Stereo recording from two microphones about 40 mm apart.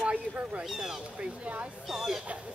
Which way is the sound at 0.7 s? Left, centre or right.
Centre.